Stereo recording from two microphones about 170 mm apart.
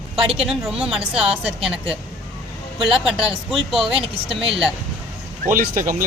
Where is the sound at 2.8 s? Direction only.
Centre (ahead or behind).